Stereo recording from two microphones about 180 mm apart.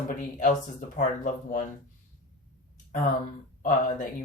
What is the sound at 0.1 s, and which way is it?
Speech, 40° left (ahead or behind).